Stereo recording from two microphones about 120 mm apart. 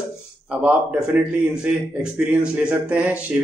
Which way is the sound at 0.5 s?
10° right (ahead or behind).